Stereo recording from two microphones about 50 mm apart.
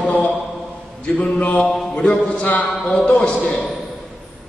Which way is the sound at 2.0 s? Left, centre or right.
Left.